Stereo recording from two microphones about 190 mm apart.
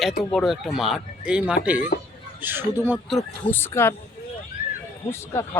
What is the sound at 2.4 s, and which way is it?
Speech, 10° right (ahead or behind).